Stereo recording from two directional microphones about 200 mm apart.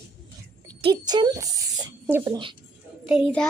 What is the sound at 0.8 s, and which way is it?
A child's voice, 20° right (ahead or behind).